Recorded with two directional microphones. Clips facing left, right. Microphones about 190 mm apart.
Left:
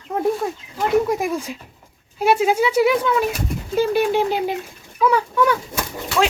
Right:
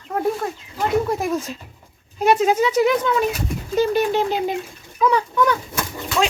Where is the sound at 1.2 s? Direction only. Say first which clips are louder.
Even; 10° left (ahead or behind).